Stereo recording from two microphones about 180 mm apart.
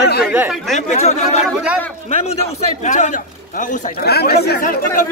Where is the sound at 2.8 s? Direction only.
45° left (ahead or behind).